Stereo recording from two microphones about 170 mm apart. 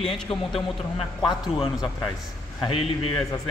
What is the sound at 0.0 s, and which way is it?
A man's voice, 35° left (ahead or behind).